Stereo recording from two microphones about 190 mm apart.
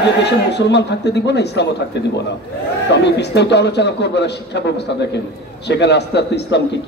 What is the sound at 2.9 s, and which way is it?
A man's voice, 60° left (ahead or behind).